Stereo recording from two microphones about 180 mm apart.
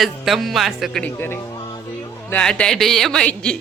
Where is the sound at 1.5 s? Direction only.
25° left (ahead or behind).